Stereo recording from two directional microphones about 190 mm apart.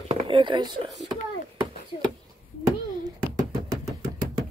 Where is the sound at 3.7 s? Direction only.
20° right (ahead or behind).